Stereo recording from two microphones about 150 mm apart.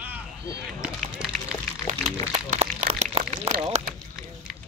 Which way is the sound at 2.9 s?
45° right (ahead or behind).